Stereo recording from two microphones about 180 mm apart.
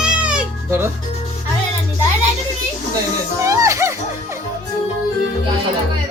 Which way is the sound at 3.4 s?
15° right (ahead or behind).